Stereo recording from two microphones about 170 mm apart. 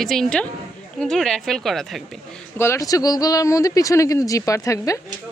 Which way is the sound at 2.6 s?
20° left (ahead or behind).